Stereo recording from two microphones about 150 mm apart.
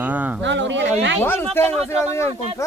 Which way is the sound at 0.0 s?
10° right (ahead or behind).